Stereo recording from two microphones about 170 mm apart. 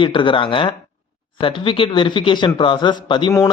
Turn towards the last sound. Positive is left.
turn(degrees=25)  # may be behind; listen again after turning